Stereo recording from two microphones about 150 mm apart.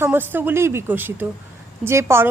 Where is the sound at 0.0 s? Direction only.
15° right (ahead or behind).